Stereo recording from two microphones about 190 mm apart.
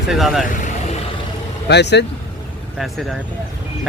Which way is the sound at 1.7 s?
65° left (ahead or behind).